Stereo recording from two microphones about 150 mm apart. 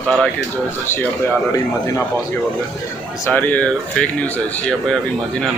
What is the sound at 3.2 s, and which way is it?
Speech, 10° left (ahead or behind).